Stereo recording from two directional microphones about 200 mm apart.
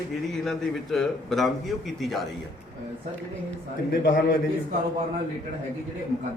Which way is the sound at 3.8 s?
45° left (ahead or behind).